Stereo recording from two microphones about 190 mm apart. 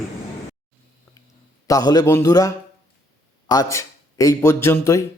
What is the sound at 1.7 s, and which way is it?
A man's voice, 20° left (ahead or behind).